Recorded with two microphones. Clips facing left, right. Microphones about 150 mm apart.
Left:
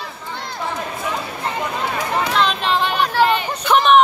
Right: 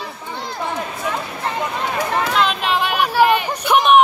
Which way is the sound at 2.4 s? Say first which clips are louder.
Left 1 dB; 10° right (ahead or behind).